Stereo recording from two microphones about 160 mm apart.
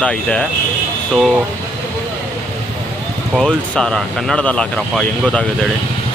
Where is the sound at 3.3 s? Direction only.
5° left (ahead or behind).